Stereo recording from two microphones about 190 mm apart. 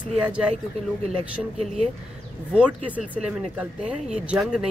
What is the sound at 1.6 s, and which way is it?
Speech, 35° right (ahead or behind).